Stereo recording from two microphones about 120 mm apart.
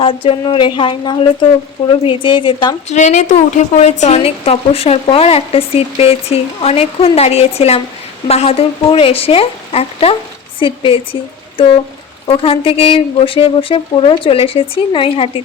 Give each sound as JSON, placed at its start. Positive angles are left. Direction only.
{"t": 0.0, "sound": "speech", "side_deg": 50}
{"t": 2.9, "sound": "a woman's voice", "side_deg": 75}